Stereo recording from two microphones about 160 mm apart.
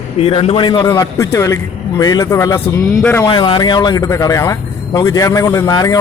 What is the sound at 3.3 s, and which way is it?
Speech, 30° left (ahead or behind).